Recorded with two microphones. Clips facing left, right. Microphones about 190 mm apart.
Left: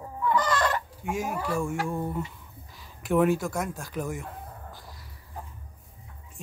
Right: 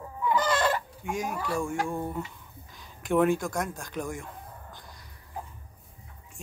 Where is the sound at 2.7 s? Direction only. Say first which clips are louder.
Left 1 dB; 5° left (ahead or behind).